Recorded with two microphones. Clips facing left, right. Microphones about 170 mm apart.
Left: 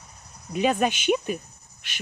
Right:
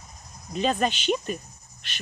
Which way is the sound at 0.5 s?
10° left (ahead or behind).